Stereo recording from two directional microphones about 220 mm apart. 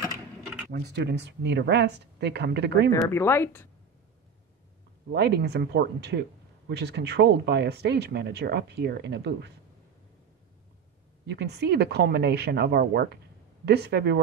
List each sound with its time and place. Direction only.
0.7 s speech: 45° right (ahead or behind)
2.9 s speech: 10° left (ahead or behind)
5.1 s speech: 50° right (ahead or behind)
11.2 s speech: 50° right (ahead or behind)